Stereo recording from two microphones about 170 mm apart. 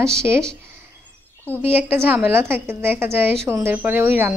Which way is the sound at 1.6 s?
10° right (ahead or behind).